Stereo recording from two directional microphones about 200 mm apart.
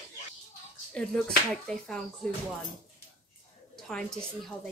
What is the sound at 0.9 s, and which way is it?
Speech, 5° left (ahead or behind).